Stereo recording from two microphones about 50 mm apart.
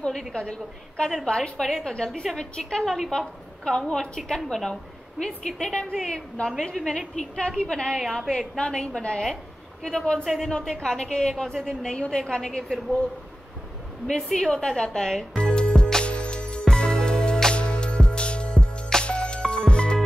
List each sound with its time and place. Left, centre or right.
0.3 s a woman's voice: centre
5.2 s a woman's voice: centre
14.0 s music: centre